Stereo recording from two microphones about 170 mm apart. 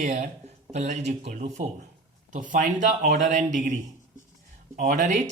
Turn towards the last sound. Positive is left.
turn(degrees=-50)  # may be behind; listen again after turning